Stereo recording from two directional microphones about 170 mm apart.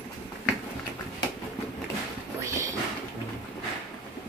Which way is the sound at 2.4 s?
15° right (ahead or behind).